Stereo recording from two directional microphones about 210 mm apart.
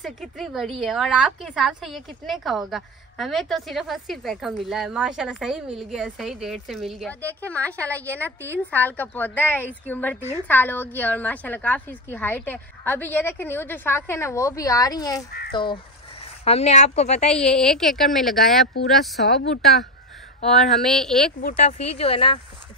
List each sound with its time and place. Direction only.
0.0 s a woman's voice: centre (ahead or behind); by 17.3 s 30° left (ahead or behind)
17.3 s a woman's voice: 5° left (ahead or behind)
19.2 s a woman's voice: 50° left (ahead or behind)
20.5 s a woman's voice: centre (ahead or behind)
21.4 s speech: 40° left (ahead or behind)